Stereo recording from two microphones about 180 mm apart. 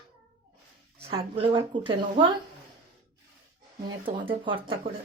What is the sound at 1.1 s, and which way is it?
A woman's voice, 30° right (ahead or behind).